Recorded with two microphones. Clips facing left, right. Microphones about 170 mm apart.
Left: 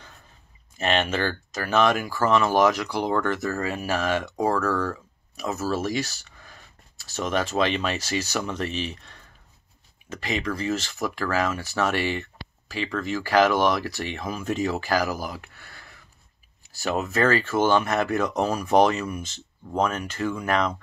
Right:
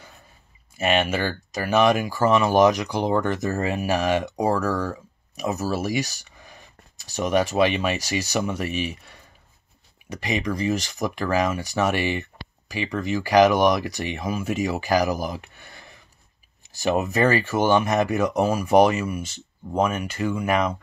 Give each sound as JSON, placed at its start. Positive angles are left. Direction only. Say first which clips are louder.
{"t": 0.7, "sound": "speech", "louder": "right 2 dB", "side_deg": -10}